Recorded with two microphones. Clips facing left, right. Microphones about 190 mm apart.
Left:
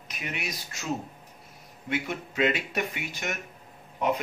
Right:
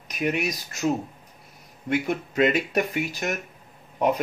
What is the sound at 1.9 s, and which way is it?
Speech, 45° right (ahead or behind).